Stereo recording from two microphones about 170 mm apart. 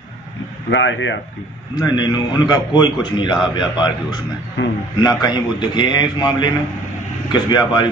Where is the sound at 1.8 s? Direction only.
25° left (ahead or behind).